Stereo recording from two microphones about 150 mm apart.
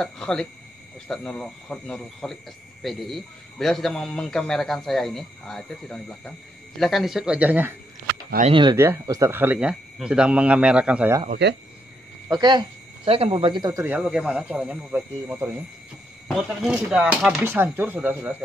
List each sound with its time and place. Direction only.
0.0 s speech: 5° left (ahead or behind); by 7.7 s 10° right (ahead or behind)
8.5 s speech: 35° right (ahead or behind)
8.7 s speech: 20° right (ahead or behind)
11.2 s speech: 90° right
12.3 s speech: 30° right (ahead or behind)
13.8 s speech: 5° right (ahead or behind)
16.3 s speech: centre (ahead or behind)